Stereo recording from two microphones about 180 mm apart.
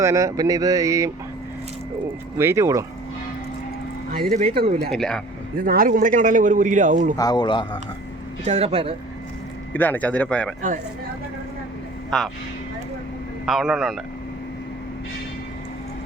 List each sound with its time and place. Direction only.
0.0 s speech: 15° right (ahead or behind)
2.4 s speech: 15° right (ahead or behind)
4.1 s a man's voice: 55° right (ahead or behind)
4.9 s a man's voice: 5° left (ahead or behind)
5.5 s a man's voice: 55° right (ahead or behind)
7.2 s speech: 25° left (ahead or behind)
8.4 s speech: 35° right (ahead or behind)
9.7 s speech: 10° left (ahead or behind)
12.1 s a man's voice: centre (ahead or behind)
13.4 s a man's voice: centre (ahead or behind)